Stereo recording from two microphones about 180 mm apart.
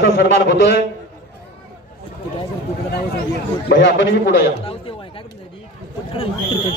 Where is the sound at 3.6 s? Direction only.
90° left.